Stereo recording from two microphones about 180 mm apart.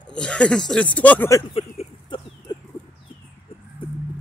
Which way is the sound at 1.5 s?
30° left (ahead or behind).